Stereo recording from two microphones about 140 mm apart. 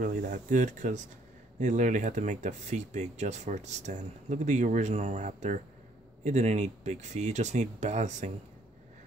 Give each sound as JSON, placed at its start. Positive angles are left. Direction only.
{"t": 0.0, "sound": "speech", "side_deg": -75}